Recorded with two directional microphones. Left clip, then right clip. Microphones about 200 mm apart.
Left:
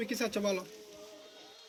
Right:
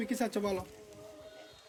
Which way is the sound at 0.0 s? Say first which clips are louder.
Left 1 dB; 50° right (ahead or behind).